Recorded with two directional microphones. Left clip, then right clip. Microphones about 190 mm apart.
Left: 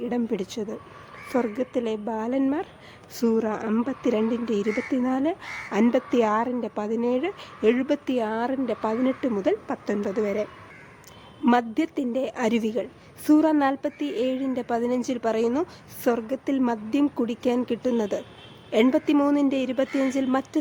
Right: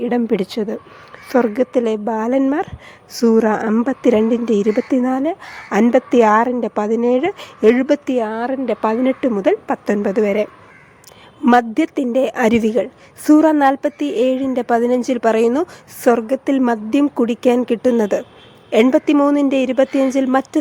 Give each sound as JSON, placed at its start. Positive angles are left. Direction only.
{"t": 0.0, "sound": "a woman's voice", "side_deg": -25}
{"t": 5.1, "sound": "a woman's voice", "side_deg": -15}